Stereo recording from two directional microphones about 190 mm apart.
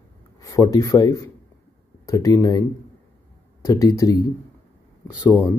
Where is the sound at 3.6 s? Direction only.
15° left (ahead or behind).